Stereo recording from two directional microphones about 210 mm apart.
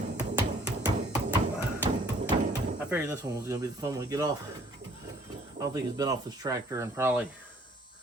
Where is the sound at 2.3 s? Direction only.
25° right (ahead or behind).